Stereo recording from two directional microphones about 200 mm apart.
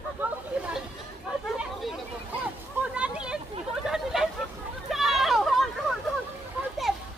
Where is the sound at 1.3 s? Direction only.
5° right (ahead or behind).